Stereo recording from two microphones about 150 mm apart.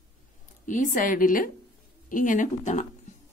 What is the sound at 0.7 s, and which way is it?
Speech, 60° left (ahead or behind).